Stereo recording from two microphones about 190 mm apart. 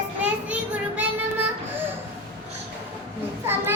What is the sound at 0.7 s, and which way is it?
Child singing, 10° right (ahead or behind).